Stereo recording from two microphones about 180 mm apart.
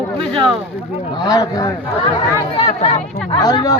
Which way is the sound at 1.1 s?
20° left (ahead or behind).